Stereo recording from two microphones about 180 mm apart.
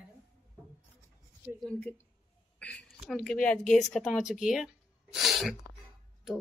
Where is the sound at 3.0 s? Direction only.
Centre (ahead or behind).